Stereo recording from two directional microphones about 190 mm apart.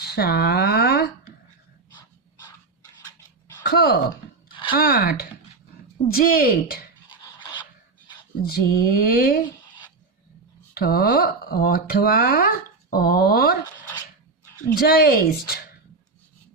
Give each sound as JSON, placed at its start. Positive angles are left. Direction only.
{"t": 0.0, "sound": "speech", "side_deg": 55}
{"t": 3.6, "sound": "speech", "side_deg": 55}
{"t": 7.3, "sound": "a sound", "side_deg": 25}
{"t": 8.4, "sound": "speech", "side_deg": 55}
{"t": 10.8, "sound": "speech", "side_deg": 55}
{"t": 14.8, "sound": "speech", "side_deg": 55}